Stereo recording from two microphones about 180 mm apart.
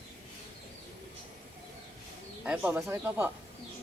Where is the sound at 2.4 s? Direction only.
10° right (ahead or behind).